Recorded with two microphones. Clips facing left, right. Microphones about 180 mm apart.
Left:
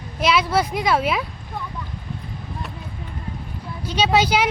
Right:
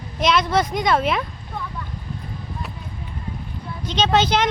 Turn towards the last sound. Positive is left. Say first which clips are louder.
# even
turn(degrees=10)  # may be behind; listen again after turning